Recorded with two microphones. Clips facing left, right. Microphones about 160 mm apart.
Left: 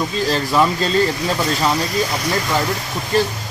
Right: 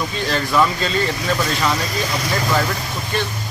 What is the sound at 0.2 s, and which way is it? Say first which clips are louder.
Speech: left 2 dB; 35° left (ahead or behind).